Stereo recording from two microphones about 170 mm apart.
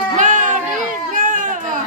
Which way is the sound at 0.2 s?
50° right (ahead or behind).